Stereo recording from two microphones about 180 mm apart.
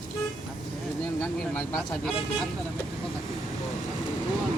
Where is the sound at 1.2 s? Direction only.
5° left (ahead or behind).